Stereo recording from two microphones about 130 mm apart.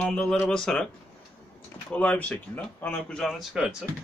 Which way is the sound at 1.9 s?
10° left (ahead or behind).